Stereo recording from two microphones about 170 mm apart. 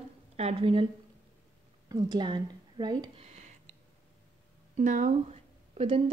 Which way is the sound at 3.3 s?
40° right (ahead or behind).